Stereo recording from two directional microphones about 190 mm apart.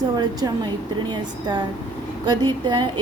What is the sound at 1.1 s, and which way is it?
A woman's voice, 25° right (ahead or behind).